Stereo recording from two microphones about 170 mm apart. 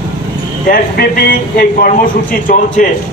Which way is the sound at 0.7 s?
60° left (ahead or behind).